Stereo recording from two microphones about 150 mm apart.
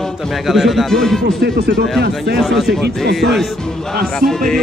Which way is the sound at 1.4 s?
90° right.